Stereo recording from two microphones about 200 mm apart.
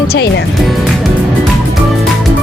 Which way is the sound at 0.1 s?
60° left (ahead or behind).